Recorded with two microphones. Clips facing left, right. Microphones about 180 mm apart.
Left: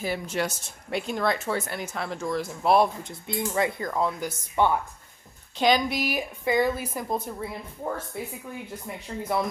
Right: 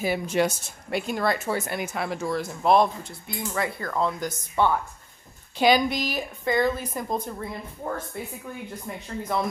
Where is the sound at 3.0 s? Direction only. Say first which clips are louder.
Left 3 dB; 20° left (ahead or behind).